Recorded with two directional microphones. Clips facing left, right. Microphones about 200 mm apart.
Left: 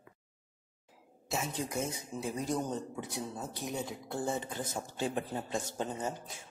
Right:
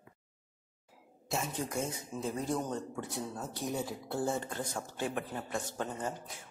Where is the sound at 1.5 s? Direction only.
20° left (ahead or behind); by 4.6 s centre (ahead or behind).